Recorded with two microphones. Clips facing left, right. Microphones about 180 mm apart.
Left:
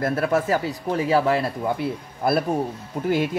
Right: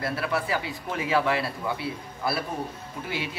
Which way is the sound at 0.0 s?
45° left (ahead or behind).